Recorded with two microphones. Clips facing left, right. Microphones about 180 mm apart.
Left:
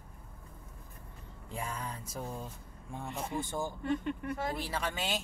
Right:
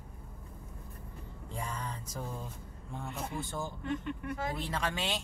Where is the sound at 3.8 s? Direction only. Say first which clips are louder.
Left 3 dB; 40° left (ahead or behind).